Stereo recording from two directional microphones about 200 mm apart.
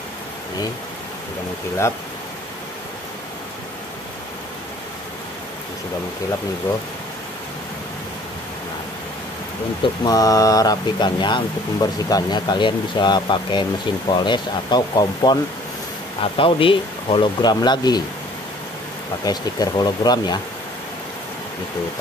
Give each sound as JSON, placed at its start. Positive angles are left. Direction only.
{"t": 10.0, "sound": "speech", "side_deg": 20}
{"t": 19.2, "sound": "speech", "side_deg": 20}